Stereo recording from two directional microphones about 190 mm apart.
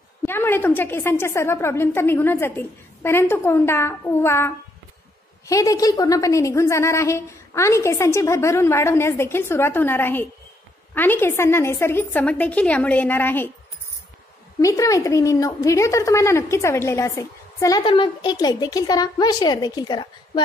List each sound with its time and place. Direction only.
0.2 s a woman's voice: 10° left (ahead or behind)
5.5 s a woman's voice: 20° left (ahead or behind)
14.6 s a woman's voice: 15° left (ahead or behind)